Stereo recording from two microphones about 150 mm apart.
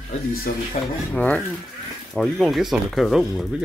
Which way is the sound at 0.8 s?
45° left (ahead or behind).